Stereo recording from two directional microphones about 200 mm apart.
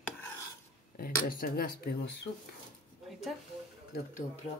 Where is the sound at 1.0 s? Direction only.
45° left (ahead or behind).